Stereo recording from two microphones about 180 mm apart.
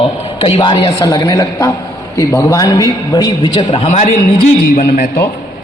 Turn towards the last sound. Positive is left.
turn(degrees=50)  # may be behind; listen again after turning